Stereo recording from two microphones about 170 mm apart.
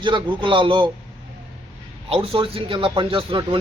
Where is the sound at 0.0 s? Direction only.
30° right (ahead or behind).